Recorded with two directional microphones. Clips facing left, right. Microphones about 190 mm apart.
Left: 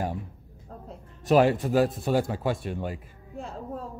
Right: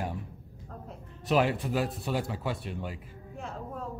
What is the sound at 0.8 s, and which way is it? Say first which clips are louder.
A man's voice: left 6 dB; 45° left (ahead or behind).